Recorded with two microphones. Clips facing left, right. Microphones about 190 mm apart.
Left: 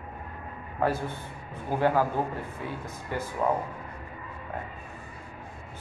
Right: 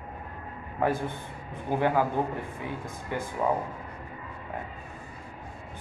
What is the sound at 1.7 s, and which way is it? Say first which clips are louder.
Speech: left 1 dB; 15° right (ahead or behind).